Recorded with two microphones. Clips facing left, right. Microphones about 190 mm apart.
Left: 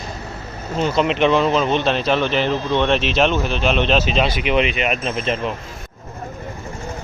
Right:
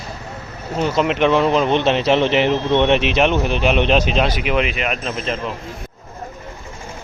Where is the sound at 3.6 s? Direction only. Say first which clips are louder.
Right 1 dB; 15° right (ahead or behind); by 5.4 s 5° left (ahead or behind).